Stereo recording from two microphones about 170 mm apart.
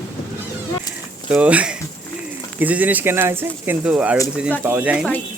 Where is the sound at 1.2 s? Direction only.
10° right (ahead or behind).